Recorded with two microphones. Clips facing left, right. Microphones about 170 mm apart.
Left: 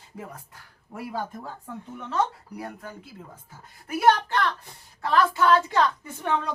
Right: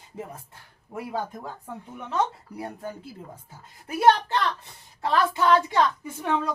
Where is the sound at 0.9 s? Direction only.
20° right (ahead or behind).